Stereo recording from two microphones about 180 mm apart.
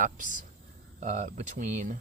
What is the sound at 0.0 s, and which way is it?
Speech, 45° right (ahead or behind).